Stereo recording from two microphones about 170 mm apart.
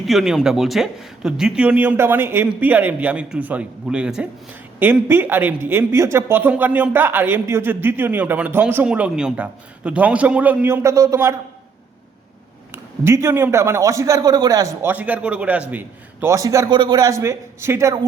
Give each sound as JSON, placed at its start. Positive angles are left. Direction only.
{"t": 0.0, "sound": "speech", "side_deg": 0}
{"t": 12.7, "sound": "speech", "side_deg": -15}
{"t": 14.8, "sound": "speech", "side_deg": -10}